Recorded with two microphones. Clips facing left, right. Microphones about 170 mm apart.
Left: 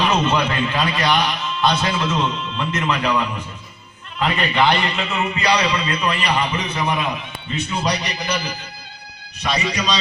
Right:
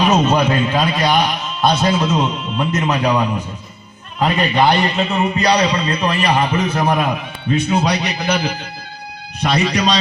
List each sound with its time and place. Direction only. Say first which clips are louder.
0.0 s a man's voice: right 4 dB; 45° right (ahead or behind); by 10.0 s 60° right (ahead or behind)